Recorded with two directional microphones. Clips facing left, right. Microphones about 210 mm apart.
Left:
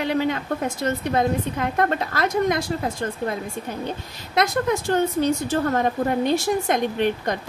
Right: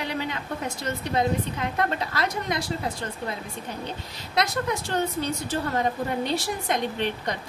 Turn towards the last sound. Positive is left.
turn(degrees=50)  # may be behind; listen again after turning